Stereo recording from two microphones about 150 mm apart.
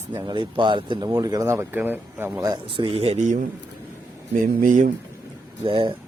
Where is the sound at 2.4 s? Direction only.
30° right (ahead or behind); by 3.5 s 55° right (ahead or behind).